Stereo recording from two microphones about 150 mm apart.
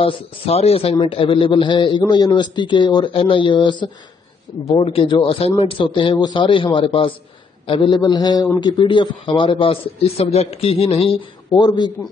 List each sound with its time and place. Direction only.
0.0 s a man's voice: 40° left (ahead or behind)